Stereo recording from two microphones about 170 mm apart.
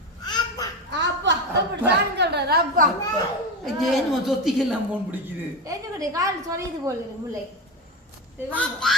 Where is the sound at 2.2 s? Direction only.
75° right (ahead or behind).